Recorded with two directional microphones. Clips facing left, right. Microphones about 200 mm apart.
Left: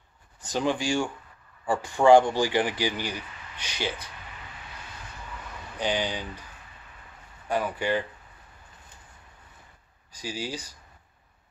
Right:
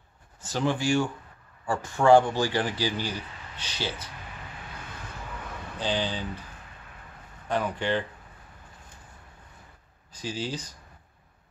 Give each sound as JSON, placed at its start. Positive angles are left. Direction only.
{"t": 0.4, "sound": "speech", "side_deg": 15}
{"t": 5.8, "sound": "speech", "side_deg": 15}
{"t": 7.4, "sound": "speech", "side_deg": 10}
{"t": 10.1, "sound": "speech", "side_deg": 10}